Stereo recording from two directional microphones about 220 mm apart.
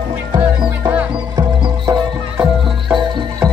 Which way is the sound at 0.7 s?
5° right (ahead or behind).